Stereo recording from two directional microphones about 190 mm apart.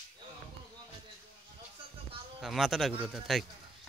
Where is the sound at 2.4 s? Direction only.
Centre (ahead or behind).